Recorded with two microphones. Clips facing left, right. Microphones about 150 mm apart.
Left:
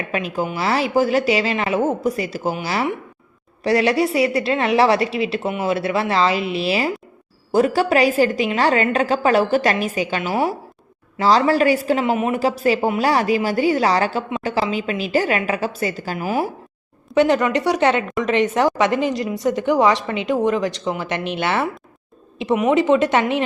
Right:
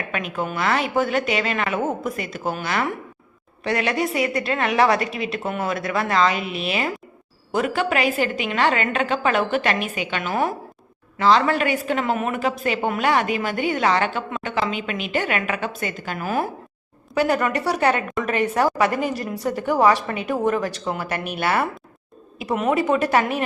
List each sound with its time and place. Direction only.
0.1 s a woman's voice: 30° left (ahead or behind)
3.6 s a woman's voice: 35° left (ahead or behind)
5.4 s speech: 5° left (ahead or behind)
5.6 s a woman's voice: 30° left (ahead or behind)
10.2 s speech: 15° left (ahead or behind)
11.2 s a woman's voice: 35° left (ahead or behind)
16.1 s a woman's voice: 15° left (ahead or behind)
22.7 s a woman's voice: 20° left (ahead or behind)